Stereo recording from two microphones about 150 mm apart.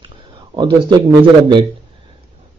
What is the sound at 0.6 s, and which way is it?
Speech, 30° right (ahead or behind).